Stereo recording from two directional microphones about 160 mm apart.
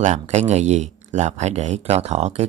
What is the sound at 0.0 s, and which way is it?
Speech, 45° right (ahead or behind).